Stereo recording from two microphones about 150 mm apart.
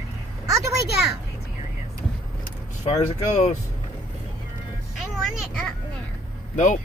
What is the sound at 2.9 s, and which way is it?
Speech, 45° left (ahead or behind).